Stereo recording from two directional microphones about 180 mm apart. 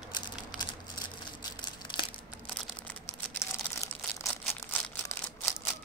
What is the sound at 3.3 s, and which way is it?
Crumpling, 15° left (ahead or behind).